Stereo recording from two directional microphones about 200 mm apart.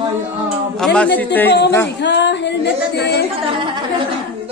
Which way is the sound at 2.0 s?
60° left (ahead or behind).